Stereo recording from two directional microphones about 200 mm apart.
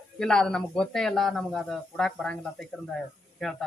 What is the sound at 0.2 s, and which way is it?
Speech, 5° left (ahead or behind).